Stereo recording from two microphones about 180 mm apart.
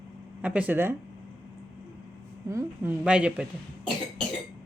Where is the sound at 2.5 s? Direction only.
15° right (ahead or behind).